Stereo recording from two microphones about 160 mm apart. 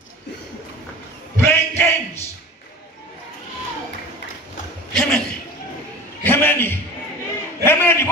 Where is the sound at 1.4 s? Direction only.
15° left (ahead or behind).